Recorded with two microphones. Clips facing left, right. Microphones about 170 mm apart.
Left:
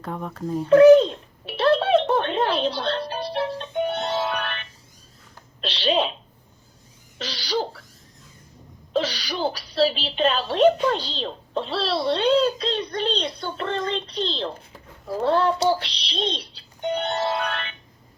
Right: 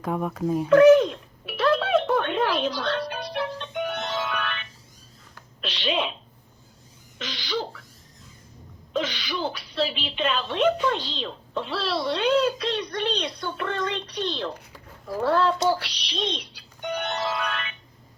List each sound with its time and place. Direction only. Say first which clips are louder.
0.0 s a child's voice: right 4 dB; 10° right (ahead or behind)
0.7 s a sound: left 3 dB; 30° left (ahead or behind)
7.2 s owl: left 3 dB; 35° left (ahead or behind)
8.9 s a woman's voice: left 3 dB; 35° left (ahead or behind)
15.6 s music: left 2 dB; 30° left (ahead or behind)